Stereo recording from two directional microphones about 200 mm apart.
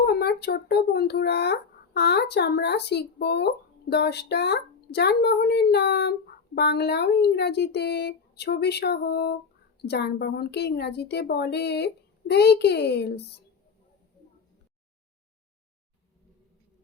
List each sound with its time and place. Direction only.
0.0 s speech: 50° left (ahead or behind)